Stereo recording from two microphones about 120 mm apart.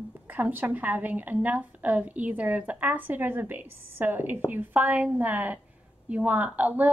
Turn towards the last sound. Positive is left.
turn(degrees=-15)  # may be behind; listen again after turning